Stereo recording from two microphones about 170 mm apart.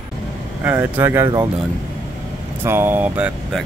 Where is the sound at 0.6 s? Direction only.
10° right (ahead or behind).